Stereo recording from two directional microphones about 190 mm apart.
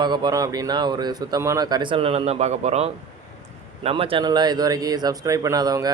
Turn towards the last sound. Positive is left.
turn(degrees=-20)  # may be behind; listen again after turning